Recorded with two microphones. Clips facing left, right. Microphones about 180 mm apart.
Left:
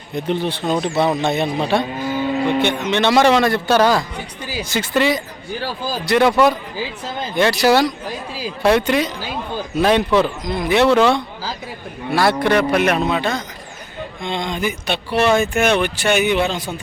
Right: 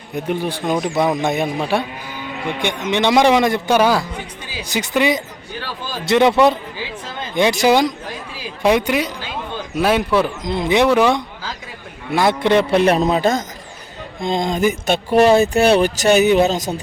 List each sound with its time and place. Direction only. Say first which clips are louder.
0.1 s a man's voice: left 1 dB; 10° right (ahead or behind)
1.8 s cattle: left 7 dB; 40° left (ahead or behind)
2.6 s a man's voice: left 2 dB; 15° right (ahead or behind)
5.5 s speech: left 4 dB; 40° left (ahead or behind)
6.1 s a man's voice: right 1 dB; 20° right (ahead or behind)
10.4 s a man's voice: even; 25° right (ahead or behind); by 16.8 s 40° right (ahead or behind)